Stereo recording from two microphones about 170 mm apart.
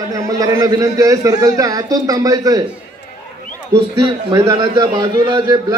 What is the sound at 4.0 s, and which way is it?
A man's voice, 25° right (ahead or behind).